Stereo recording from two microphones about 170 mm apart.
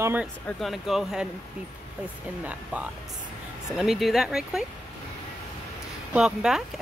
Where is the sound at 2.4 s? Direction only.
10° right (ahead or behind).